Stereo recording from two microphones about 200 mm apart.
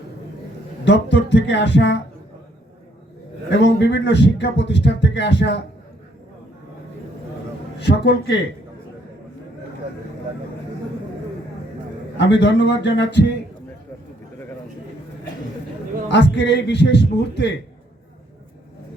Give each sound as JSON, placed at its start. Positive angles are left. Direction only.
{"t": 0.9, "sound": "speech", "side_deg": 60}
{"t": 3.6, "sound": "speech", "side_deg": 60}
{"t": 7.8, "sound": "speech", "side_deg": 60}
{"t": 12.1, "sound": "speech", "side_deg": 60}
{"t": 16.0, "sound": "speech", "side_deg": 60}